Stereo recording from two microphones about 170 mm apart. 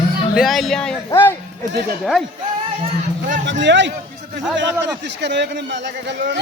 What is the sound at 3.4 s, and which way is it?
Speech, 90° right.